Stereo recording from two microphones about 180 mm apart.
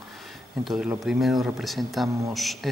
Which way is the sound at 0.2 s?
Centre (ahead or behind).